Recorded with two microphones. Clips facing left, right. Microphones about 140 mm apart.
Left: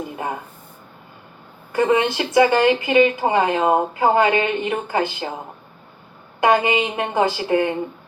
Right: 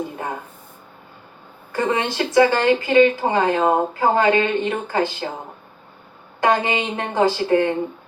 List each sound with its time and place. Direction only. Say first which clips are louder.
1.7 s speech: left 4 dB; 15° left (ahead or behind)
6.4 s speech: left 2 dB; 15° left (ahead or behind)